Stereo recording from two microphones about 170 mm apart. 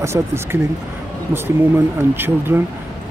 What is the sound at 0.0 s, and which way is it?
Speech, 15° right (ahead or behind).